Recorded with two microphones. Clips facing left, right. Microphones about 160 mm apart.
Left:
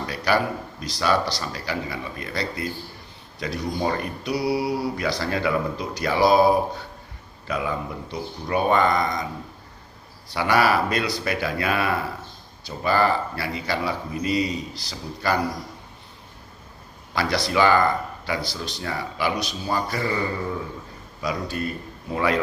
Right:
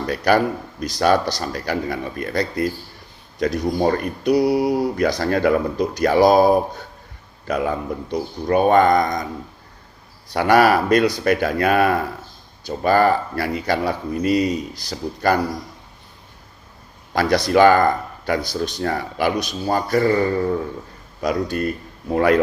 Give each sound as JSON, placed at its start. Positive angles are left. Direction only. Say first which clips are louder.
{"t": 0.0, "sound": "speech", "louder": "right 5 dB", "side_deg": -50}
{"t": 10.3, "sound": "speech", "louder": "right 5 dB", "side_deg": -50}
{"t": 17.2, "sound": "speech", "louder": "right 7 dB", "side_deg": -45}
{"t": 21.5, "sound": "speech", "louder": "right 5 dB", "side_deg": -50}